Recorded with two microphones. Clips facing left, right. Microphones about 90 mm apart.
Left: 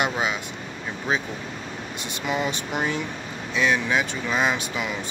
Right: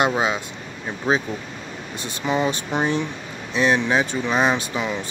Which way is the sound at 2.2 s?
30° right (ahead or behind).